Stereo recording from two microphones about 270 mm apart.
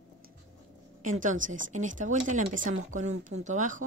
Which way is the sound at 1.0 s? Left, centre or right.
Right.